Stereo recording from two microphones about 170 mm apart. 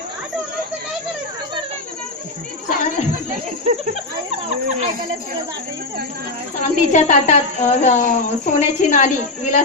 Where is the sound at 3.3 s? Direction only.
45° right (ahead or behind).